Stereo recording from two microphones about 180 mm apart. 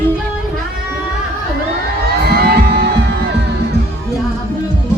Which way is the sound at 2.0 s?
60° right (ahead or behind).